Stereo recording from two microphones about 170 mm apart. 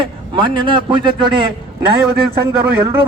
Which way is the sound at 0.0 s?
30° right (ahead or behind).